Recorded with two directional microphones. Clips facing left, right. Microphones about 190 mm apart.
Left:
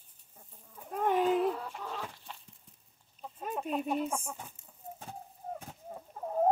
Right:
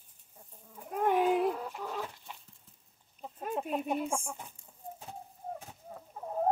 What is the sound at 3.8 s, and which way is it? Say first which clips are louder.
Speech: even; 10° right (ahead or behind).